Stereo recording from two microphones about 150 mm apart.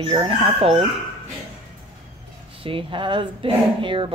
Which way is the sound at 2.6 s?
35° right (ahead or behind).